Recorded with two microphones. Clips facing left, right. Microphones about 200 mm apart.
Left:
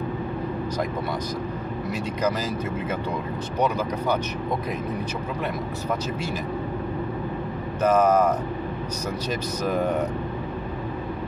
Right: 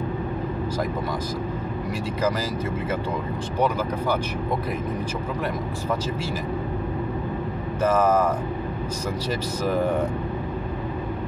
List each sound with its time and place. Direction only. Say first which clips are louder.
8.0 s speech: left 1 dB; 90° right